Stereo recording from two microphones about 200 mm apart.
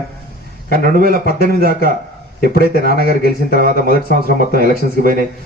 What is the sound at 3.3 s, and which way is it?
Speech, 45° right (ahead or behind).